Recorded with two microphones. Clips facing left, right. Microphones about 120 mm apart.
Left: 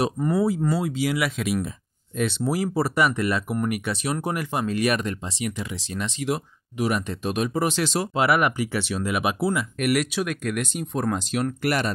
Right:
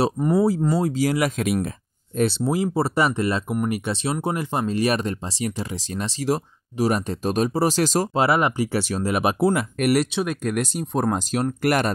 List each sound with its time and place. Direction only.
0.2 s speech: 15° right (ahead or behind)
0.7 s speech: 40° right (ahead or behind)
2.1 s speech: 35° right (ahead or behind)
2.4 s speech: 25° right (ahead or behind); by 11.9 s 45° right (ahead or behind)